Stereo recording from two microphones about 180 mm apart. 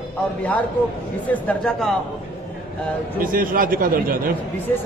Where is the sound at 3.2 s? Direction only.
50° right (ahead or behind).